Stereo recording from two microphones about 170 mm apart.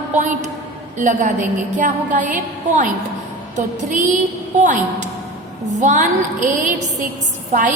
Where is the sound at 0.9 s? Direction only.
45° right (ahead or behind).